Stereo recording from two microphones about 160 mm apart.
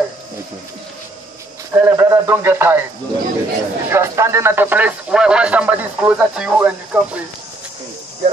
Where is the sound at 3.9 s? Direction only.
15° right (ahead or behind).